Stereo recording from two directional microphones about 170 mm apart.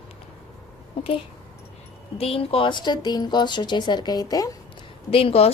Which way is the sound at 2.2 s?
35° left (ahead or behind).